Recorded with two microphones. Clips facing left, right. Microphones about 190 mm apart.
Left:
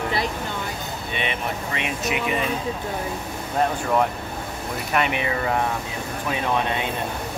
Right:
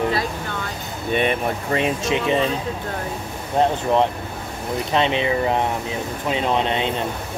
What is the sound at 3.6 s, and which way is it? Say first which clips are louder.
Speech: right 4 dB; 25° right (ahead or behind).